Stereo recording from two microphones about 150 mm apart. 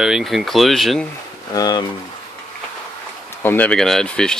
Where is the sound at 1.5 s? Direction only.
25° left (ahead or behind).